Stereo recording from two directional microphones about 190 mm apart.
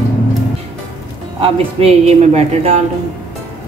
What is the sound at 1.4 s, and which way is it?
Speech, 30° right (ahead or behind).